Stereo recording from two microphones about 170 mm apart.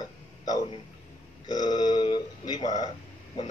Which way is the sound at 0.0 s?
25° left (ahead or behind).